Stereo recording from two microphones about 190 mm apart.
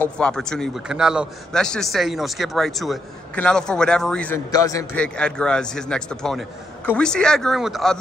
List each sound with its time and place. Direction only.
0.0 s a man's voice: 5° left (ahead or behind)
4.5 s a man's voice: 20° left (ahead or behind)
4.9 s a man's voice: 5° left (ahead or behind)